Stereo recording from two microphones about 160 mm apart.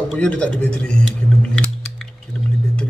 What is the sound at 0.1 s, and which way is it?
Speech, 10° left (ahead or behind).